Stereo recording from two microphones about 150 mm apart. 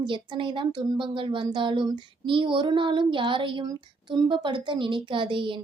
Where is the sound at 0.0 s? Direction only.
35° right (ahead or behind).